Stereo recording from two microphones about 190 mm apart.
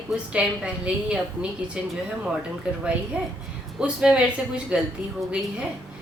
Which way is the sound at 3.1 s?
5° right (ahead or behind).